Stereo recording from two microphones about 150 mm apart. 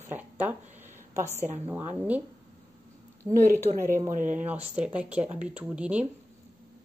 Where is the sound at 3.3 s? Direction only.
60° right (ahead or behind).